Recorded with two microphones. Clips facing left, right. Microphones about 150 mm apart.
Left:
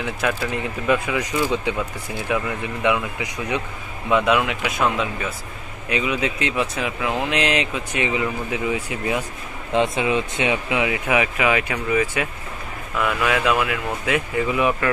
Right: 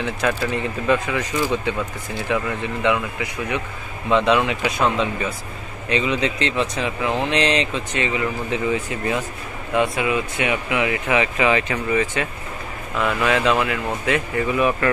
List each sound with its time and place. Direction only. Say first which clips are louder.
0.2 s speech: right 2 dB; 5° left (ahead or behind)
9.8 s speech: even; 25° left (ahead or behind)